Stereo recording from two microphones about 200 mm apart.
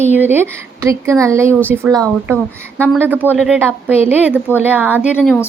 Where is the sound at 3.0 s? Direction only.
10° right (ahead or behind).